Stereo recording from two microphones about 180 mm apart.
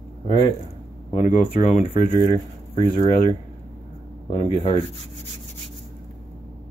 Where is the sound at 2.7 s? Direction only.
30° left (ahead or behind).